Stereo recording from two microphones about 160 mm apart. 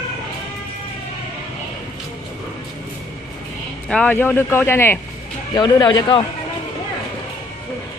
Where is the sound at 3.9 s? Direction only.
10° left (ahead or behind); by 6.2 s 25° left (ahead or behind).